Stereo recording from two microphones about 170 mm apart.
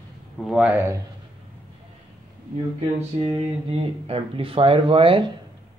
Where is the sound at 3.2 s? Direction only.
35° right (ahead or behind).